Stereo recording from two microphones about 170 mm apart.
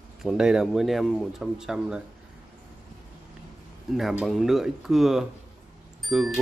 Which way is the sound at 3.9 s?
Centre (ahead or behind).